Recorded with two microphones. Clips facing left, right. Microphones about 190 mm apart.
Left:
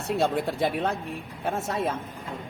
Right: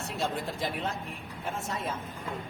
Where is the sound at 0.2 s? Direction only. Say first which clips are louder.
Left 6 dB; 60° left (ahead or behind).